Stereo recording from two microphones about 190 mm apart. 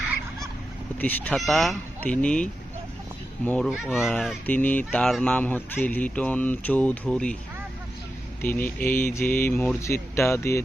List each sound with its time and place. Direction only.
0.9 s speech: 10° left (ahead or behind)
8.4 s speech: 10° left (ahead or behind)